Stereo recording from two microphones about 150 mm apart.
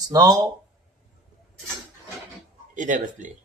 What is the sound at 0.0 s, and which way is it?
Speech, 25° right (ahead or behind).